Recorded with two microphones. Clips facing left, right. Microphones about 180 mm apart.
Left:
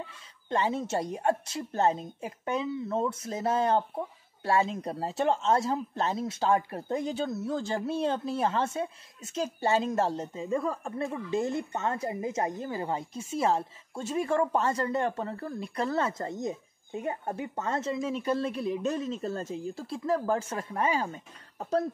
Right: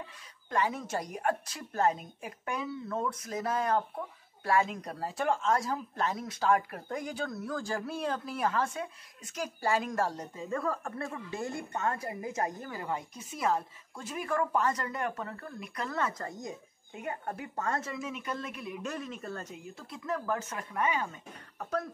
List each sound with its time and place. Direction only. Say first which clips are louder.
0.0 s speech: left 3 dB; 25° left (ahead or behind)